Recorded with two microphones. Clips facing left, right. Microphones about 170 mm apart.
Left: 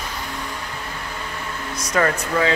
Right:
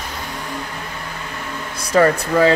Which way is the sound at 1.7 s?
30° right (ahead or behind).